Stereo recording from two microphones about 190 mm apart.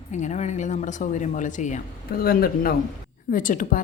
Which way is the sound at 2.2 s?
50° left (ahead or behind).